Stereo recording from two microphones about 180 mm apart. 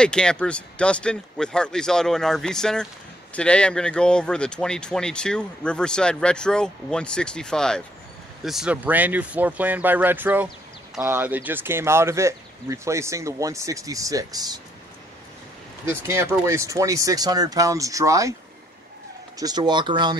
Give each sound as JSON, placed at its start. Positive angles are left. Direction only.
{"t": 0.0, "sound": "speech", "side_deg": 5}
{"t": 15.8, "sound": "speech", "side_deg": -15}
{"t": 19.3, "sound": "speech", "side_deg": -20}